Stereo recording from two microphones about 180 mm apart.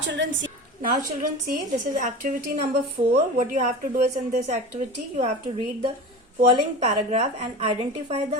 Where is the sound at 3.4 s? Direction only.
40° right (ahead or behind).